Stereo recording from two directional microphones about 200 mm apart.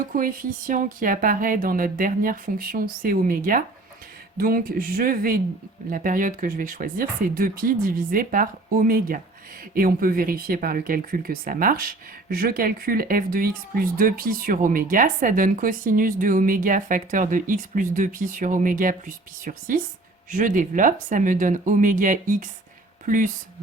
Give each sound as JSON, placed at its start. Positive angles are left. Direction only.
{"t": 0.2, "sound": "speech", "side_deg": -45}